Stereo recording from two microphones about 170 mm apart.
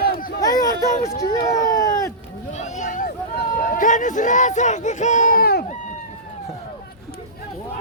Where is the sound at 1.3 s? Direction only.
20° left (ahead or behind).